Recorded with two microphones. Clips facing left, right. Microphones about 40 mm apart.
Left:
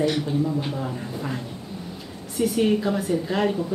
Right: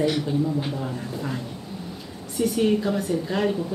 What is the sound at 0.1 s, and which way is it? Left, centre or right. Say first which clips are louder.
A woman's voice: even; centre.